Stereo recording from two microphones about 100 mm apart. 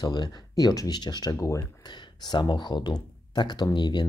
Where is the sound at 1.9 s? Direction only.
50° left (ahead or behind).